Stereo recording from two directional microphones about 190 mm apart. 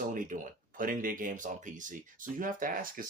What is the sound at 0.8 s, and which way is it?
Speech, 45° right (ahead or behind).